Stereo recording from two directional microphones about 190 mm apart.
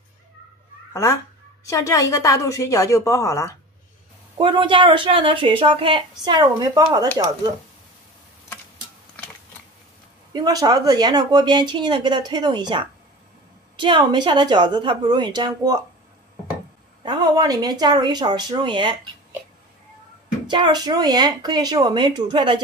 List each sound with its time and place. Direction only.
1.7 s a woman's voice: 15° left (ahead or behind)
4.4 s a woman's voice: 25° right (ahead or behind)
10.3 s a woman's voice: 20° right (ahead or behind)
17.0 s a woman's voice: 20° right (ahead or behind)
20.4 s a woman's voice: 25° right (ahead or behind)